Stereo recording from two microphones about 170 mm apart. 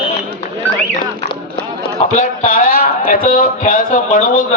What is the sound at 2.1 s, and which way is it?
A man's voice, 50° left (ahead or behind).